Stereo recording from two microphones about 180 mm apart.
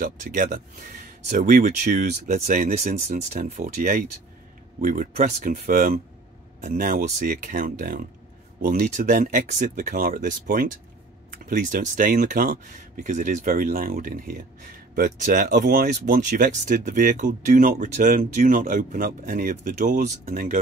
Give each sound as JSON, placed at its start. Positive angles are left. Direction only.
{"t": 0.0, "sound": "speech", "side_deg": -50}
{"t": 2.2, "sound": "speech", "side_deg": -40}